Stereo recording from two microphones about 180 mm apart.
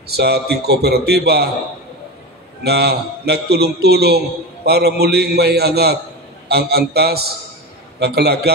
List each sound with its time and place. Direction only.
0.1 s a man's voice: 60° right (ahead or behind)
2.6 s a man's voice: 65° right (ahead or behind)